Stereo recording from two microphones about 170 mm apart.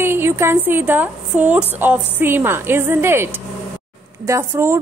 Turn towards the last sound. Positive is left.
turn(degrees=-15)  # may be behind; listen again after turning